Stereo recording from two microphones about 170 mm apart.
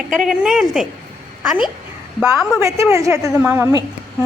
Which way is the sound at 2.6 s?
20° right (ahead or behind).